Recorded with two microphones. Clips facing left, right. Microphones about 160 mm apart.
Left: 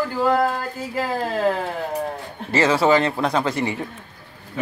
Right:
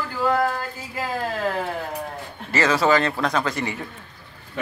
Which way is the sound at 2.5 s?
25° left (ahead or behind).